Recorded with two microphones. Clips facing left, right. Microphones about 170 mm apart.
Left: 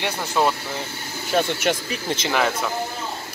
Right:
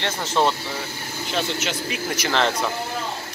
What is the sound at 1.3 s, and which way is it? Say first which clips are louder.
Speech: left 5 dB; 50° left (ahead or behind).